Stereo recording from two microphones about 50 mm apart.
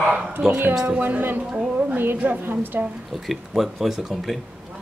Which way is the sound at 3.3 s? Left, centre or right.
Centre.